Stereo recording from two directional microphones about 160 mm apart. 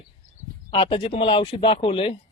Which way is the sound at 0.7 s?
35° left (ahead or behind).